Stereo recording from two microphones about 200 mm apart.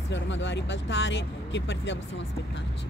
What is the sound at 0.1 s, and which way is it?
Speech, 65° left (ahead or behind).